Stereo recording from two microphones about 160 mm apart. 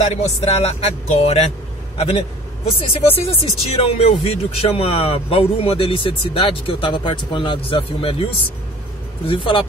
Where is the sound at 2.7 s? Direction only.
35° left (ahead or behind).